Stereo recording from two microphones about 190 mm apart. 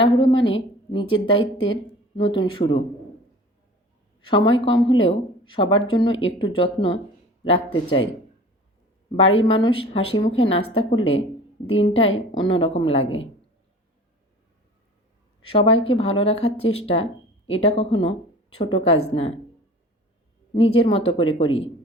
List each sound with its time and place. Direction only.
0.0 s speech: 25° left (ahead or behind)
4.4 s a woman's voice: 80° left
4.6 s speech: 25° left (ahead or behind)
9.1 s speech: 30° left (ahead or behind)
15.4 s speech: 30° left (ahead or behind)
20.5 s speech: 30° left (ahead or behind)